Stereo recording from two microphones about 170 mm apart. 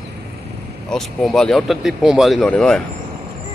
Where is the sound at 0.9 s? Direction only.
Centre (ahead or behind).